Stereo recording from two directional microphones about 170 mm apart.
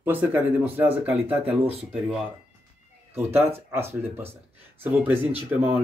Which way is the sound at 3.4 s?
35° right (ahead or behind).